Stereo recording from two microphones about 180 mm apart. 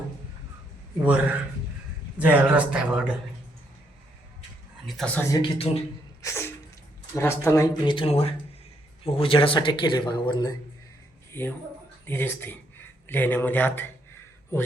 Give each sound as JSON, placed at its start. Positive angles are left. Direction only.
{"t": 1.0, "sound": "speech", "side_deg": -10}
{"t": 4.9, "sound": "speech", "side_deg": 5}
{"t": 5.3, "sound": "a man's voice", "side_deg": 30}
{"t": 6.2, "sound": "sneeze", "side_deg": 15}
{"t": 7.1, "sound": "speech", "side_deg": 15}
{"t": 11.3, "sound": "speech", "side_deg": 10}